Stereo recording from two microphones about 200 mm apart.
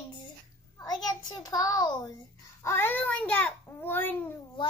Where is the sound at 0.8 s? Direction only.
20° left (ahead or behind).